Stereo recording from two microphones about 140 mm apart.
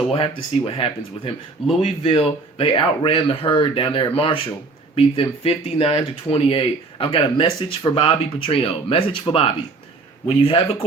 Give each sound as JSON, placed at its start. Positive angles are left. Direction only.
{"t": 0.1, "sound": "speech", "side_deg": 40}